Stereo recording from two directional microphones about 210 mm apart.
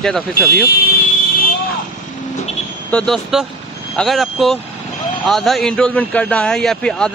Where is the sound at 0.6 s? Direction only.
45° left (ahead or behind).